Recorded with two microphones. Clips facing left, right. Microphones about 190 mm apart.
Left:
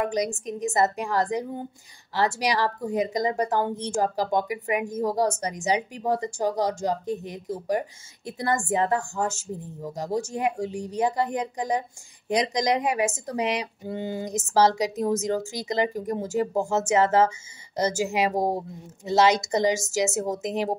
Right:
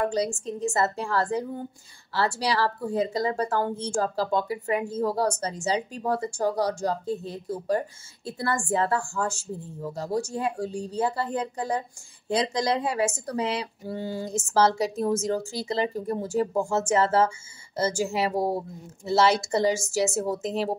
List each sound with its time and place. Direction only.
0.0 s a woman's voice: 15° left (ahead or behind)